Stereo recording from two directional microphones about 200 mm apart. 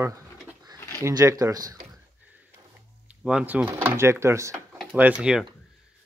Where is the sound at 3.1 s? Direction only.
5° right (ahead or behind).